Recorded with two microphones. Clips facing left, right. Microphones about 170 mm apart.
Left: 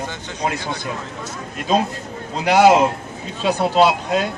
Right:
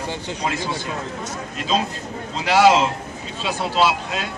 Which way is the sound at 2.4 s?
50° left (ahead or behind).